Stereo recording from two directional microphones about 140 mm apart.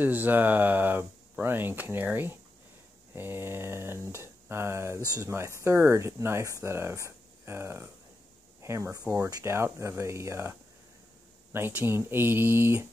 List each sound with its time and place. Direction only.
0.0 s speech: 15° right (ahead or behind)
11.5 s speech: 15° right (ahead or behind)